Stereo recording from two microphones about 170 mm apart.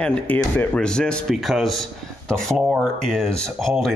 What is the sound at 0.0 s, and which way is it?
Speech, 5° left (ahead or behind).